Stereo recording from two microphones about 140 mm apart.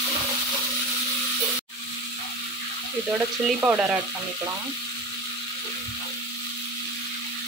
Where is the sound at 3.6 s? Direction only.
15° right (ahead or behind).